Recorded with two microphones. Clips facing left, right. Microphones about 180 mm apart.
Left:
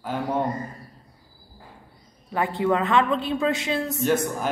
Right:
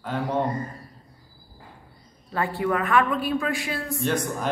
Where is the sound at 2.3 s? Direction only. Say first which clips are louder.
Left 2 dB; 20° left (ahead or behind).